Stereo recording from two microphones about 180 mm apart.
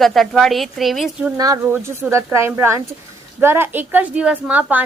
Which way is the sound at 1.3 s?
20° right (ahead or behind).